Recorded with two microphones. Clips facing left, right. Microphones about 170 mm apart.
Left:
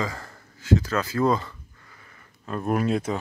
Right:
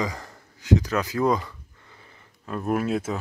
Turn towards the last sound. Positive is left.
turn(degrees=-5)  # may be behind; listen again after turning